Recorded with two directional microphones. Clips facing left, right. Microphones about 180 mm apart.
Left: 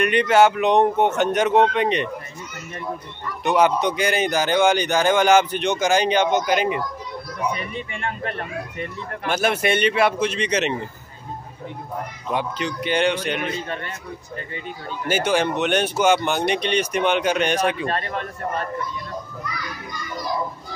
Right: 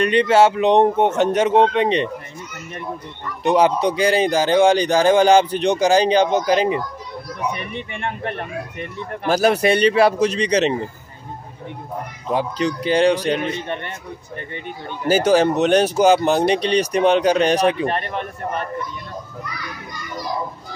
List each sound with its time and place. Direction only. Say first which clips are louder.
0.0 s speech: right 2 dB; 30° right (ahead or behind)
3.4 s speech: right 2 dB; 30° right (ahead or behind)
9.2 s speech: right 5 dB; 35° right (ahead or behind)
12.3 s speech: right 5 dB; 35° right (ahead or behind)
15.0 s speech: right 6 dB; 35° right (ahead or behind)